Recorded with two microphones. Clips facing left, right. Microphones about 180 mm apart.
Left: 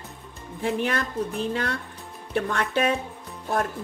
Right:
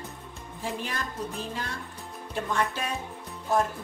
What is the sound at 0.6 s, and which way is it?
Speech, 65° left (ahead or behind).